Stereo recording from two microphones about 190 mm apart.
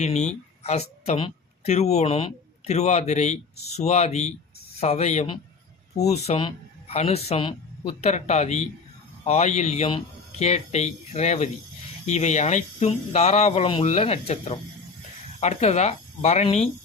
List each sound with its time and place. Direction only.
0.0 s a woman's voice: 35° left (ahead or behind)